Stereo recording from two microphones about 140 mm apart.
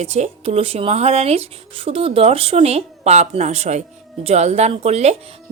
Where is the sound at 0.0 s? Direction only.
50° right (ahead or behind).